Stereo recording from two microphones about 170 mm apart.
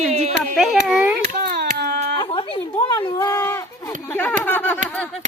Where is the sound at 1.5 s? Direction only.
70° right (ahead or behind).